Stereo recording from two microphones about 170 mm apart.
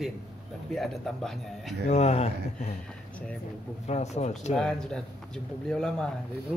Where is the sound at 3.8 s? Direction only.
40° left (ahead or behind).